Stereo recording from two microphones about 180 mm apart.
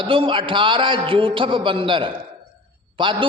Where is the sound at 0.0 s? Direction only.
30° right (ahead or behind).